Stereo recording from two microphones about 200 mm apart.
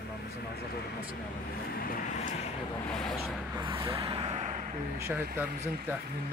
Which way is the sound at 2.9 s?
Centre (ahead or behind).